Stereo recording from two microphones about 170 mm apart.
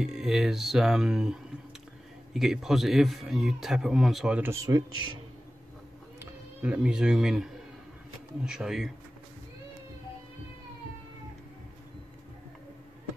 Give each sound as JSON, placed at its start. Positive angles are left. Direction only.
{"t": 0.0, "sound": "a man's voice", "side_deg": 0}
{"t": 4.4, "sound": "speech", "side_deg": -20}
{"t": 6.6, "sound": "a man's voice", "side_deg": -5}